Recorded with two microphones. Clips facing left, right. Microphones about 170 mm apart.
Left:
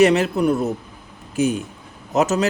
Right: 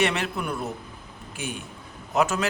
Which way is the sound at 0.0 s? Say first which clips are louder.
Left 11 dB; 40° left (ahead or behind).